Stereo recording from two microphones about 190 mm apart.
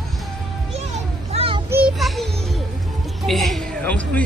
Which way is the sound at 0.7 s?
35° right (ahead or behind).